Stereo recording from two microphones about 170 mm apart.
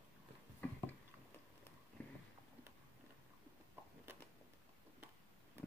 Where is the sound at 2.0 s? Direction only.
10° left (ahead or behind).